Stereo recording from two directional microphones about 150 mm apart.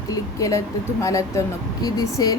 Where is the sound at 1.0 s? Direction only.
20° left (ahead or behind).